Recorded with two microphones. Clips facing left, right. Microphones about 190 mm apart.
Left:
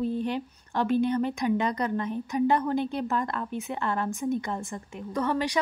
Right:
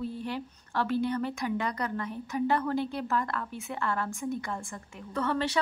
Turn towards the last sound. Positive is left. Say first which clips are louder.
# left 2 dB
turn(degrees=10)  # may be behind; listen again after turning